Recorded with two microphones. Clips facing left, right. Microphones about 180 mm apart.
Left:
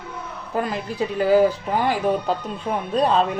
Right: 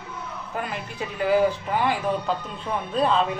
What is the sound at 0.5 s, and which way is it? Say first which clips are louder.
Speech: left 7 dB; 35° left (ahead or behind).